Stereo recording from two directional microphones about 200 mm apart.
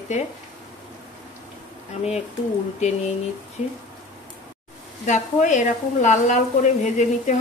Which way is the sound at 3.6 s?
35° left (ahead or behind).